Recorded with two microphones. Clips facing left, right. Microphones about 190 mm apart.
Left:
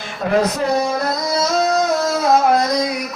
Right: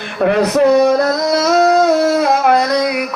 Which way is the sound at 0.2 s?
65° right (ahead or behind).